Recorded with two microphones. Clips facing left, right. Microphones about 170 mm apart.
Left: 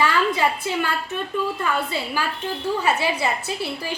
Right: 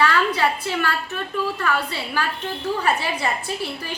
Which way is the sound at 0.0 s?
15° left (ahead or behind).